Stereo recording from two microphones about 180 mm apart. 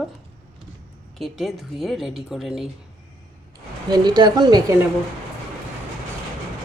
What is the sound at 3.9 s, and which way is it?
Speech, 25° right (ahead or behind).